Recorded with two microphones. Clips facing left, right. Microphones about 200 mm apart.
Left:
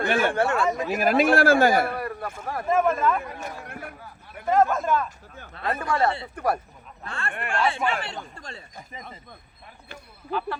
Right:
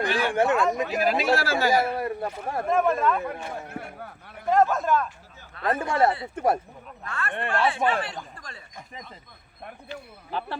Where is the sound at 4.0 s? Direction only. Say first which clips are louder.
Right 4 dB; 60° right (ahead or behind).